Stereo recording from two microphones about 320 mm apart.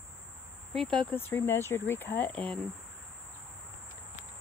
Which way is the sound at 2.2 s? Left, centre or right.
Centre.